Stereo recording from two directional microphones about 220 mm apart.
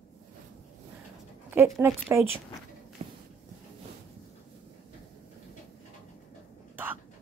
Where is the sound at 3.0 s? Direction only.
30° right (ahead or behind).